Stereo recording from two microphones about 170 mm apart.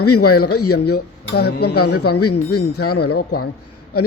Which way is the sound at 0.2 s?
70° left (ahead or behind).